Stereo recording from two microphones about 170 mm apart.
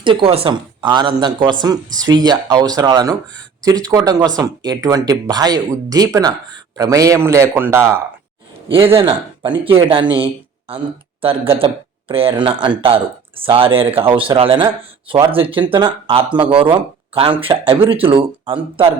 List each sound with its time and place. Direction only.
0.0 s a man's voice: 30° right (ahead or behind); by 8.0 s 15° right (ahead or behind)
9.0 s speech: 30° right (ahead or behind)